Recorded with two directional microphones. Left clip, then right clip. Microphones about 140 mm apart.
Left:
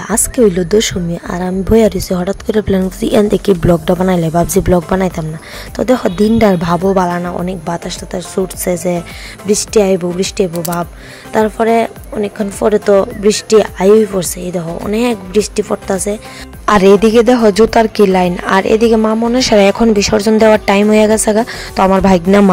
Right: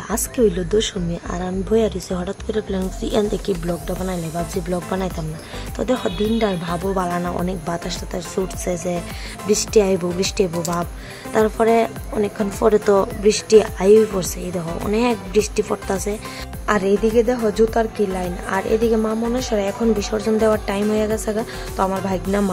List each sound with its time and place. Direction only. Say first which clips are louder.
0.1 s speech: left 7 dB; 40° left (ahead or behind)
6.3 s speech: left 10 dB; 60° left (ahead or behind); by 7.2 s 45° left (ahead or behind)
7.2 s speech: left 5 dB; 30° left (ahead or behind)
16.6 s speech: left 10 dB; 90° left